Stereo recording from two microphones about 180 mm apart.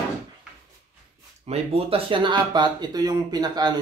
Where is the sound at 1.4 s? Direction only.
35° right (ahead or behind).